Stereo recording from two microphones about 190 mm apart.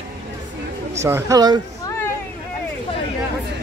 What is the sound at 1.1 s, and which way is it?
Speech, 15° right (ahead or behind).